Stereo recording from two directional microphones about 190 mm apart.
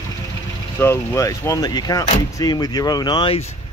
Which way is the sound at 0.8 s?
15° left (ahead or behind).